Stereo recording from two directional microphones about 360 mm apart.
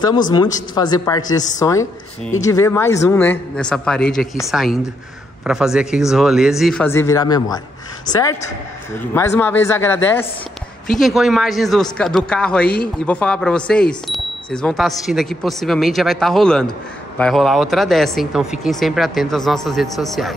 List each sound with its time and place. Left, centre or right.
0.0 s a woman's voice: centre
2.4 s speech: centre